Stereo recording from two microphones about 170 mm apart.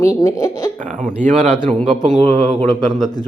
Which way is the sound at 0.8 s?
45° right (ahead or behind).